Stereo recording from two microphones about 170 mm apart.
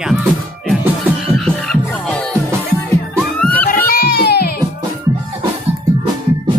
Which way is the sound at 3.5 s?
60° left (ahead or behind).